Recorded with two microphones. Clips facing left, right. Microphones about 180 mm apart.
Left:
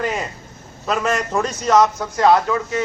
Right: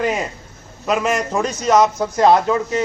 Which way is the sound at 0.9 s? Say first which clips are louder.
Right 2 dB; 15° right (ahead or behind).